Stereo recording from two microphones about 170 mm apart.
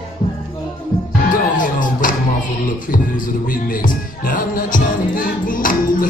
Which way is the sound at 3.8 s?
55° left (ahead or behind).